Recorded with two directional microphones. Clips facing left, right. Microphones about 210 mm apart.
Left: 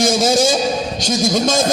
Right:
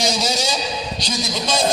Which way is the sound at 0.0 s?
50° left (ahead or behind).